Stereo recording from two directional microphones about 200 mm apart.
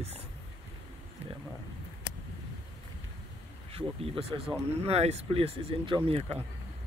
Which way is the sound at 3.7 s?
30° right (ahead or behind).